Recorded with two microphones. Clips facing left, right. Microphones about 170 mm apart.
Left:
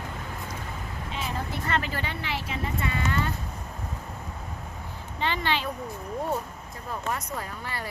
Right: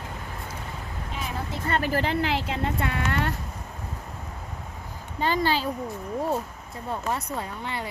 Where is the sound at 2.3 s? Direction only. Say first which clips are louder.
Right 4 dB; 70° right (ahead or behind).